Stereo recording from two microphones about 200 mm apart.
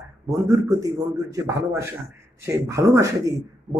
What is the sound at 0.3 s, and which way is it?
A man's voice, 15° right (ahead or behind).